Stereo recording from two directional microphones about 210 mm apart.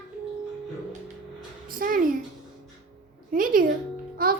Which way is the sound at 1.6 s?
40° right (ahead or behind).